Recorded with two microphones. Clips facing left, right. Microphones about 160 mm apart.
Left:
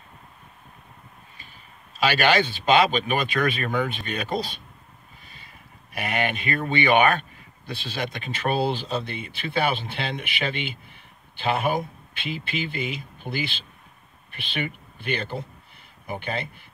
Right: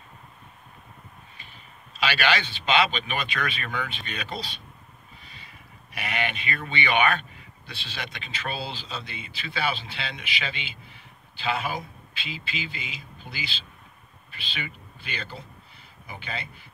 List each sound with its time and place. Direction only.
2.0 s speech: 45° left (ahead or behind)
5.2 s a sound: 45° left (ahead or behind)
5.9 s speech: 45° left (ahead or behind)